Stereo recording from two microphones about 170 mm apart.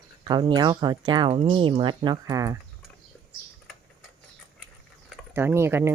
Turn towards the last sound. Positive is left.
turn(degrees=-15)  # may be behind; listen again after turning